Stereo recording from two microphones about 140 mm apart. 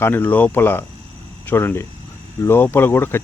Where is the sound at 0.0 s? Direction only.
15° left (ahead or behind).